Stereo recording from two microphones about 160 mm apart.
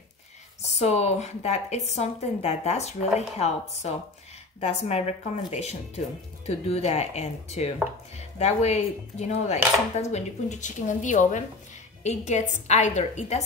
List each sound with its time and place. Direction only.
0.7 s a woman's voice: 45° left (ahead or behind)